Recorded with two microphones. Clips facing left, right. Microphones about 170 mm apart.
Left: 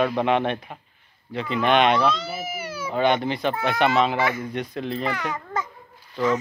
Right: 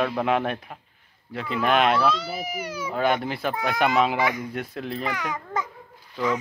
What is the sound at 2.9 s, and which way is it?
A child's voice, 5° right (ahead or behind).